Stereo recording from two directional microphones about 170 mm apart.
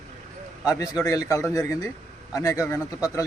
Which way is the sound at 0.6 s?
20° left (ahead or behind).